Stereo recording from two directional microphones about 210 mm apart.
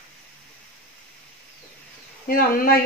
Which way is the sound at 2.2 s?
45° left (ahead or behind).